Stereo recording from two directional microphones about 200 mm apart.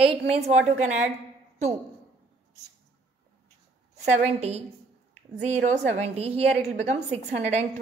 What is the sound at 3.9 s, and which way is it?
A woman's voice, 30° right (ahead or behind).